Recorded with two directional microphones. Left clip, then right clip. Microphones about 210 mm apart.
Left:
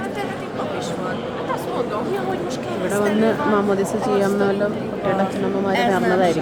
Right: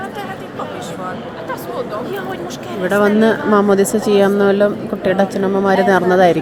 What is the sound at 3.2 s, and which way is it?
A woman's voice, 25° right (ahead or behind).